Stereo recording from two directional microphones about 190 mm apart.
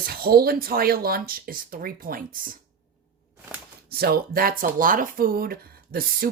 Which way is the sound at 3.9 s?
55° right (ahead or behind).